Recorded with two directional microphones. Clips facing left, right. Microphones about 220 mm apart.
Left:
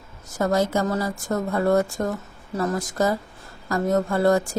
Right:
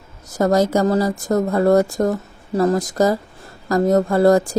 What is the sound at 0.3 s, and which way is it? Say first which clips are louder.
A woman's voice: right 5 dB; 40° right (ahead or behind).